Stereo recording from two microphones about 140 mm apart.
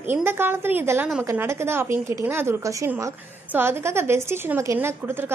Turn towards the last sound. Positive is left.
turn(degrees=-15)  # may be behind; listen again after turning